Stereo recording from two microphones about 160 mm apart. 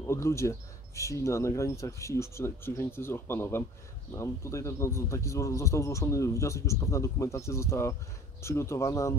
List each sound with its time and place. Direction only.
0.0 s speech: 15° left (ahead or behind)